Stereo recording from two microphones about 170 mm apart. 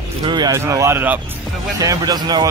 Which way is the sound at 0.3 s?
25° right (ahead or behind).